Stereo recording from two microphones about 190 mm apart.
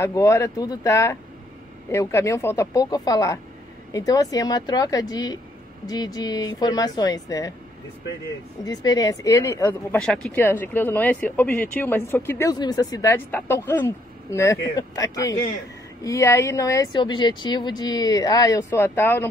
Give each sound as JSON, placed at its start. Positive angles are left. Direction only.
{"t": 0.0, "sound": "speech", "side_deg": 15}
{"t": 8.6, "sound": "speech", "side_deg": 20}